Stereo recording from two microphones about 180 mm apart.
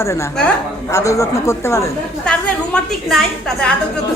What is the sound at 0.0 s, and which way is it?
Speech, 15° left (ahead or behind).